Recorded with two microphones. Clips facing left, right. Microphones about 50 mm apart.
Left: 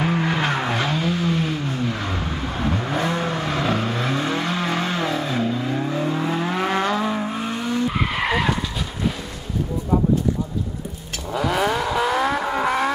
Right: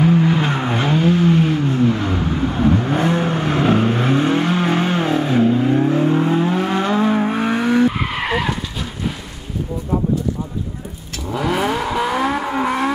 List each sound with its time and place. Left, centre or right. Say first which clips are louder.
0.0 s vehicle: right 6 dB; centre
0.4 s vehicle: right 2 dB; centre
0.7 s vehicle: right 5 dB; centre
2.0 s vehicle: right 6 dB; centre
3.0 s vehicle: right 5 dB; centre
6.4 s vehicle: right 3 dB; centre
6.8 s vehicle: right 5 dB; centre
7.2 s vehicle: right 7 dB; right
7.9 s vehicle: right 1 dB; centre
11.2 s vehicle: right 2 dB; centre